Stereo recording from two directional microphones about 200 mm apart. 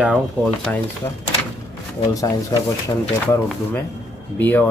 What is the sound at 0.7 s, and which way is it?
Speech, 5° left (ahead or behind).